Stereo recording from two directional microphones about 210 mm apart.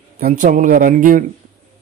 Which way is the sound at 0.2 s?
40° right (ahead or behind).